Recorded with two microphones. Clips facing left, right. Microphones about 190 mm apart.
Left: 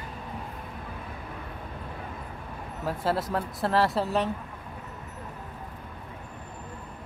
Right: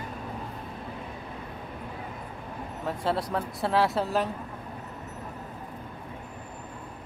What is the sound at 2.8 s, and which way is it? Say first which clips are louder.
Speech: left 1 dB; centre (ahead or behind).